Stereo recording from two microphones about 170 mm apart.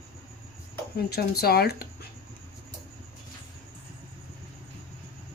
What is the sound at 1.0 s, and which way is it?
Speech, 65° left (ahead or behind).